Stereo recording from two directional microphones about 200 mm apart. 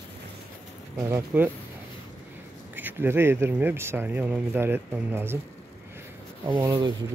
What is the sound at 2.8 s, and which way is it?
Speech, 10° right (ahead or behind).